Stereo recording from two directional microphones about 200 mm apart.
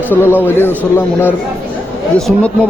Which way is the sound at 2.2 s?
Centre (ahead or behind).